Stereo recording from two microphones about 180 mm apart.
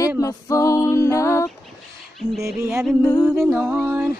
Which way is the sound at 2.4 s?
15° right (ahead or behind).